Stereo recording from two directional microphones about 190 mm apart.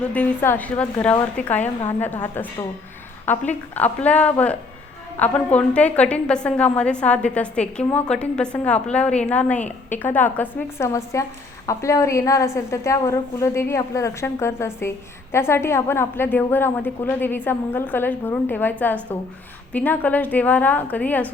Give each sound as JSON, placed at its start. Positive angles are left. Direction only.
{"t": 0.1, "sound": "a woman's voice", "side_deg": 10}